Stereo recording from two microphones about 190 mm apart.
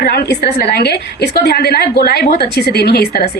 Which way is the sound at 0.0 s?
60° left (ahead or behind).